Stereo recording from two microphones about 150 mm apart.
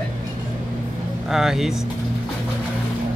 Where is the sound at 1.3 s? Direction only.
5° right (ahead or behind).